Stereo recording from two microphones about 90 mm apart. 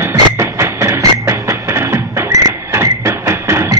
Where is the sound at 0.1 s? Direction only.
30° right (ahead or behind).